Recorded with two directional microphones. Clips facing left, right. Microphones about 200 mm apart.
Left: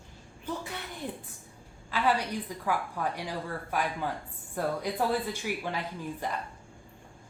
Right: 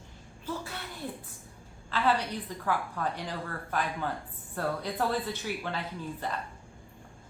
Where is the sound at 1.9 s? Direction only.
10° left (ahead or behind).